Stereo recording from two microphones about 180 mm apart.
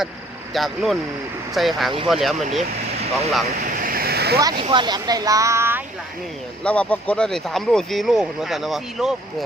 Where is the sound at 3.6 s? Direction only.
50° right (ahead or behind).